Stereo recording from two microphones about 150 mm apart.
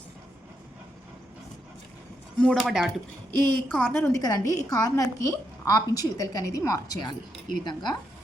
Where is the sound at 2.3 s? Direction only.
5° left (ahead or behind).